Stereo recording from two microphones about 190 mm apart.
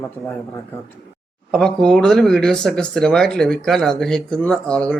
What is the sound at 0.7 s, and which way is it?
Speech, 10° left (ahead or behind).